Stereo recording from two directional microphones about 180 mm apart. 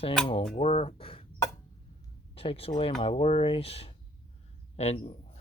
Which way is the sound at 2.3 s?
30° left (ahead or behind).